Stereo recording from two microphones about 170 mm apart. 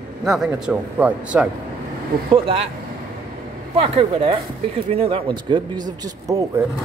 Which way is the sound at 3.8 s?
35° right (ahead or behind).